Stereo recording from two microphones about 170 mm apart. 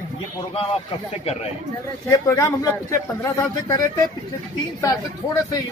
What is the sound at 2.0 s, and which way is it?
A man's voice, 20° left (ahead or behind).